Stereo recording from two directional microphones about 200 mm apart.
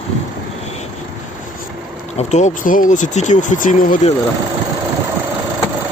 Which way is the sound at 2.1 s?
35° left (ahead or behind).